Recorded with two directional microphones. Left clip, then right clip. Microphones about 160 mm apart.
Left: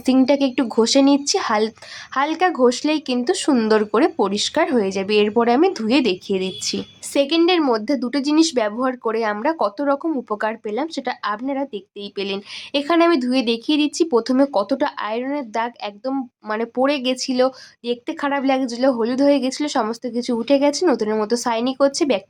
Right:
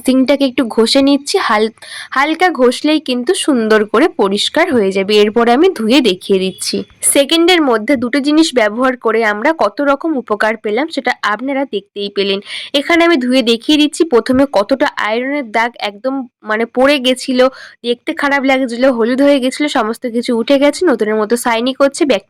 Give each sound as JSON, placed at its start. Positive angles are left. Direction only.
{"t": 0.0, "sound": "speech", "side_deg": -15}